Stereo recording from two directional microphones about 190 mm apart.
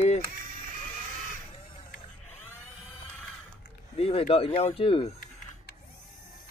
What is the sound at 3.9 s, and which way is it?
Speech, 30° left (ahead or behind).